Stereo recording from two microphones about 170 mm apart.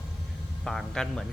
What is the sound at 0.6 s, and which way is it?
Speech, centre (ahead or behind).